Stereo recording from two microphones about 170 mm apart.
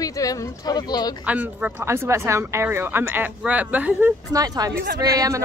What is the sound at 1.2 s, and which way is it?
Speech, 10° right (ahead or behind).